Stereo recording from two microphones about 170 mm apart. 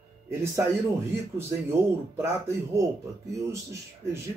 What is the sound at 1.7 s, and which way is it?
Speech, 15° right (ahead or behind).